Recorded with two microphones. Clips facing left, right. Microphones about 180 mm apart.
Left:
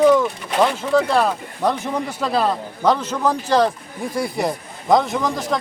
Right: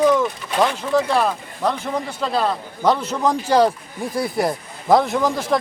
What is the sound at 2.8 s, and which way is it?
Speech, 5° right (ahead or behind).